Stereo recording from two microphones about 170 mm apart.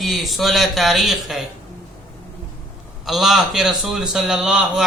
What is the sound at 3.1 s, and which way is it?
A man's voice, centre (ahead or behind).